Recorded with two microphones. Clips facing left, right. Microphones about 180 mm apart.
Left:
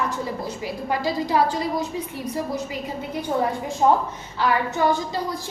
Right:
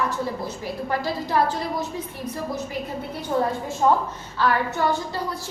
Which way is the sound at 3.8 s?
20° left (ahead or behind).